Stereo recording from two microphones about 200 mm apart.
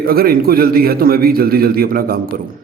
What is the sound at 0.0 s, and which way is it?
Speech, 50° right (ahead or behind).